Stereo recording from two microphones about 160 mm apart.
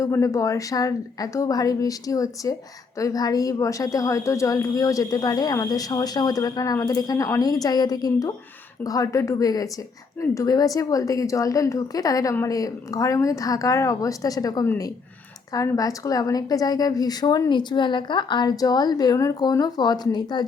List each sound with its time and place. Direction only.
0.0 s a woman's voice: 20° left (ahead or behind)